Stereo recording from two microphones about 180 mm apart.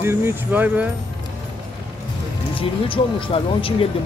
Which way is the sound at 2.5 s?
30° left (ahead or behind).